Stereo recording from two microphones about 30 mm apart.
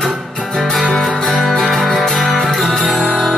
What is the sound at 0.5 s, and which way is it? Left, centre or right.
Music, centre.